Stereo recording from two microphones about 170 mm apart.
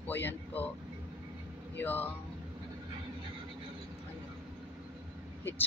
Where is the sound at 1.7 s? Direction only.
10° left (ahead or behind).